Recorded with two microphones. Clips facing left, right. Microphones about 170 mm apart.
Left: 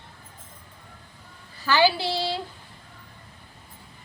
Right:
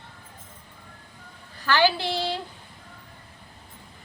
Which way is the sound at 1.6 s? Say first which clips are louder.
Left 1 dB; 10° left (ahead or behind).